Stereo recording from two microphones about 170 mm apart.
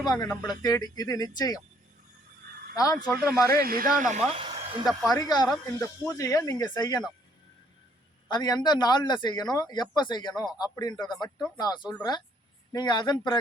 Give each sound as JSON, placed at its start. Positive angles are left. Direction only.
{"t": 0.0, "sound": "speech", "side_deg": 25}
{"t": 2.7, "sound": "speech", "side_deg": 20}
{"t": 3.5, "sound": "speech", "side_deg": -60}
{"t": 4.8, "sound": "speech", "side_deg": 0}
{"t": 5.1, "sound": "speech", "side_deg": 25}
{"t": 8.3, "sound": "speech", "side_deg": 25}